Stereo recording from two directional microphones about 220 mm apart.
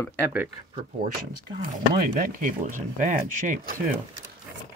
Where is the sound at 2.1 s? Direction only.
35° right (ahead or behind).